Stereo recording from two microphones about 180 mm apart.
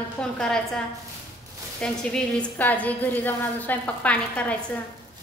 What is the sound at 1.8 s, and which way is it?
A woman's voice, 5° left (ahead or behind).